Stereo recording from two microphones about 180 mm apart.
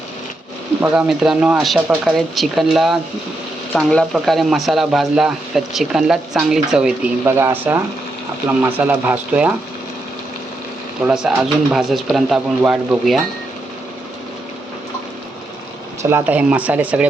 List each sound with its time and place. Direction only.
0.8 s speech: 5° right (ahead or behind)
11.0 s speech: 5° right (ahead or behind)
16.0 s speech: 10° right (ahead or behind)